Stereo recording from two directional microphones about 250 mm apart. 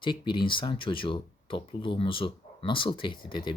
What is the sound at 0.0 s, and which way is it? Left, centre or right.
Speech, centre.